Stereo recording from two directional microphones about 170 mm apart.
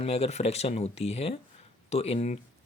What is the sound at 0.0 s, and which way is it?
Speech, 35° left (ahead or behind).